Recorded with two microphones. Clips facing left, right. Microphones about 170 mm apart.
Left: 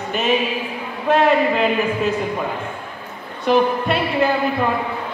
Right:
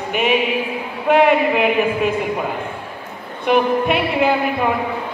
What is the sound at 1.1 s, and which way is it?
A man's voice, 10° right (ahead or behind).